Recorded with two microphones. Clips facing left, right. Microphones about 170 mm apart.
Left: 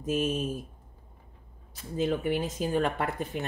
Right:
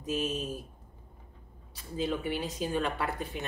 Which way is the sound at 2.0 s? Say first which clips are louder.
Left 4 dB; 45° left (ahead or behind).